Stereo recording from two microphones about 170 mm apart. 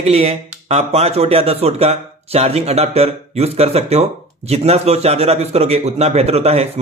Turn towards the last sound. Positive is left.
turn(degrees=-40)  # may be behind; listen again after turning